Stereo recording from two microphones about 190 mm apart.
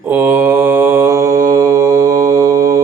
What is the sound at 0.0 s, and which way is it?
Mantra, 10° right (ahead or behind).